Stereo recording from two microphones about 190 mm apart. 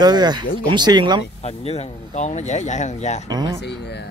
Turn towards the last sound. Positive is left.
turn(degrees=60)  # may be behind; listen again after turning